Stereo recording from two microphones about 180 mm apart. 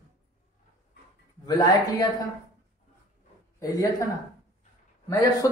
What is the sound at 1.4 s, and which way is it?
Speech, 20° left (ahead or behind).